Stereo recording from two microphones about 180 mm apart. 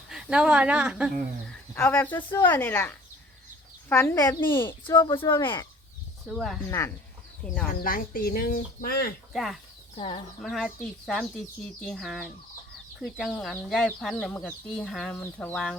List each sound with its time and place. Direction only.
0.1 s speech: 5° right (ahead or behind)
1.7 s speech: 10° left (ahead or behind)
4.8 s speech: 25° left (ahead or behind)
6.2 s speech: centre (ahead or behind)
6.7 s speech: 15° left (ahead or behind)
7.4 s speech: 5° left (ahead or behind)
7.7 s speech: 55° left (ahead or behind)
9.3 s speech: centre (ahead or behind)
9.9 s speech: 35° left (ahead or behind)
10.4 s speech: centre (ahead or behind)